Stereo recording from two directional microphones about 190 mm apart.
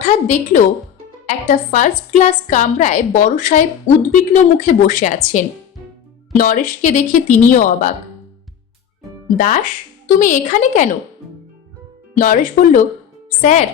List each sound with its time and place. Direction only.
0.0 s a woman's voice: 40° left (ahead or behind)
9.4 s a woman's voice: 45° left (ahead or behind)
12.1 s a woman's voice: 45° left (ahead or behind)